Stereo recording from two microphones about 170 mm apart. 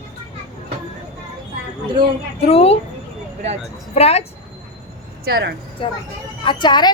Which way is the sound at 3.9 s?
40° left (ahead or behind).